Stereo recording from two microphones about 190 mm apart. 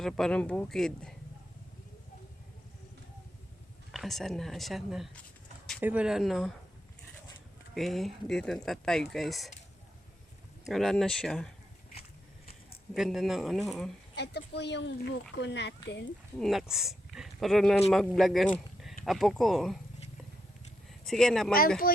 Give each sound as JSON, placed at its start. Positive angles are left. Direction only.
{"t": 0.0, "sound": "speech", "side_deg": 5}
{"t": 3.9, "sound": "speech", "side_deg": 0}
{"t": 7.8, "sound": "speech", "side_deg": 0}
{"t": 10.7, "sound": "speech", "side_deg": 0}
{"t": 12.9, "sound": "speech", "side_deg": 0}
{"t": 14.2, "sound": "speech", "side_deg": 60}
{"t": 16.4, "sound": "speech", "side_deg": 0}
{"t": 21.0, "sound": "speech", "side_deg": 0}
{"t": 21.8, "sound": "speech", "side_deg": 50}